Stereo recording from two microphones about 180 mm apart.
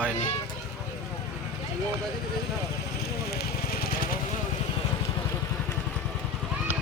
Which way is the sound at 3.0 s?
60° left (ahead or behind).